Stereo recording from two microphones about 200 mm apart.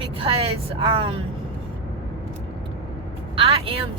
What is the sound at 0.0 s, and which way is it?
Speech, 30° right (ahead or behind).